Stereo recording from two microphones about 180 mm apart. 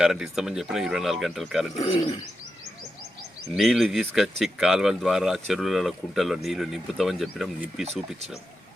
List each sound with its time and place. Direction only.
0.0 s speech: 5° right (ahead or behind)
1.7 s speech: 35° left (ahead or behind)
3.5 s speech: centre (ahead or behind)